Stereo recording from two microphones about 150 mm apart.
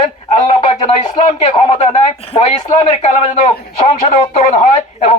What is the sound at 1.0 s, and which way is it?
Speech, 40° left (ahead or behind).